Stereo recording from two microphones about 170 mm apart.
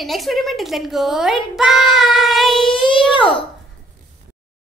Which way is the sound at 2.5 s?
30° left (ahead or behind).